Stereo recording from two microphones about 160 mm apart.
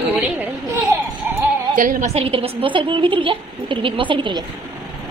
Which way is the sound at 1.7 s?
55° right (ahead or behind).